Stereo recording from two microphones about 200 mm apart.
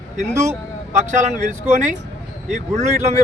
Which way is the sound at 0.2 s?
35° right (ahead or behind).